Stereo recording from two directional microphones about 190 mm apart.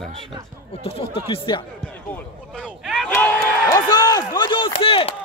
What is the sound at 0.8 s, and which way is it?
Speech, 30° left (ahead or behind).